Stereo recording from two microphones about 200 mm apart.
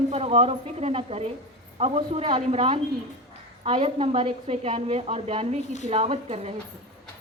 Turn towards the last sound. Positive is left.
turn(degrees=-30)  # may be behind; listen again after turning